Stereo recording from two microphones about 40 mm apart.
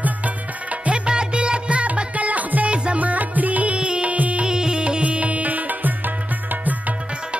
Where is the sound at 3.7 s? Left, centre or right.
Right.